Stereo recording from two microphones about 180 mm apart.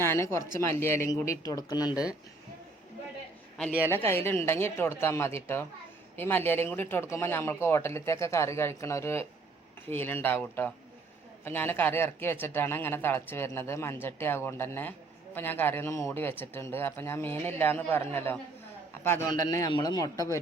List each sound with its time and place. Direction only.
0.0 s a man's voice: 15° left (ahead or behind)
3.7 s speech: 10° right (ahead or behind)
3.9 s a man's voice: 15° left (ahead or behind)
19.5 s a man's voice: 20° left (ahead or behind)